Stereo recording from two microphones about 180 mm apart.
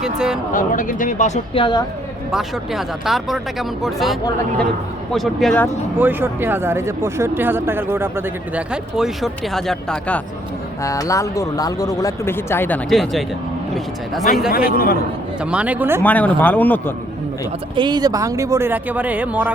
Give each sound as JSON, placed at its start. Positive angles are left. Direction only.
{"t": 0.0, "sound": "speech", "side_deg": -5}
{"t": 0.5, "sound": "speech", "side_deg": 50}
{"t": 1.5, "sound": "a woman's voice", "side_deg": 25}
{"t": 2.3, "sound": "speech", "side_deg": 0}
{"t": 6.0, "sound": "speech", "side_deg": -10}
{"t": 10.8, "sound": "speech", "side_deg": 20}
{"t": 14.5, "sound": "a man's voice", "side_deg": 55}
{"t": 15.4, "sound": "speech", "side_deg": -5}
{"t": 16.0, "sound": "speech", "side_deg": 10}
{"t": 17.7, "sound": "speech", "side_deg": -25}